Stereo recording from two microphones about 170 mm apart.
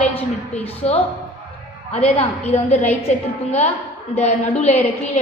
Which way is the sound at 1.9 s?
10° left (ahead or behind).